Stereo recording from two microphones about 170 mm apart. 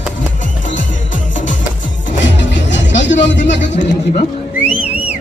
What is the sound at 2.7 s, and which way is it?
Music, 90° left.